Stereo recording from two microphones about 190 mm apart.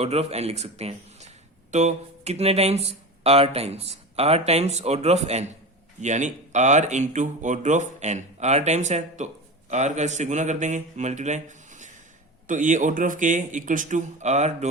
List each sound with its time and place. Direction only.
0.0 s speech: 35° right (ahead or behind)